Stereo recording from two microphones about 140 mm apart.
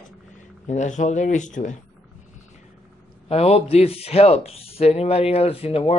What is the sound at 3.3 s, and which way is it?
Speech, 45° left (ahead or behind).